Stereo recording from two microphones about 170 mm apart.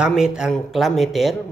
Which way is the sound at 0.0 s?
5° right (ahead or behind).